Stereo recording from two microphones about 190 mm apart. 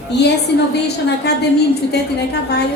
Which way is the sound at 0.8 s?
60° left (ahead or behind).